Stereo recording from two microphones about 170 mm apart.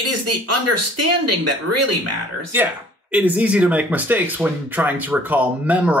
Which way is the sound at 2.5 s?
10° right (ahead or behind).